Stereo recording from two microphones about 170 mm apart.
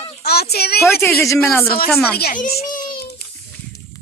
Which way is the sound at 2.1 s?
60° left (ahead or behind).